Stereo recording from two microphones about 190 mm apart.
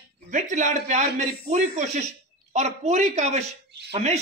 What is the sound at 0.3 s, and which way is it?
A man's voice, 40° right (ahead or behind).